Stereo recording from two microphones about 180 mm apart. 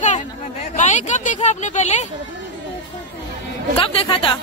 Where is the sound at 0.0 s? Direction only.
40° left (ahead or behind).